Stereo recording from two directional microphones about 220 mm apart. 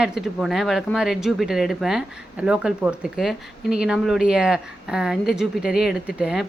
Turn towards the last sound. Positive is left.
turn(degrees=-5)  # may be behind; listen again after turning